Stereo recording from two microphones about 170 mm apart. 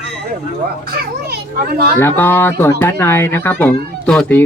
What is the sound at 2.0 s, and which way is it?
Speech, 15° left (ahead or behind).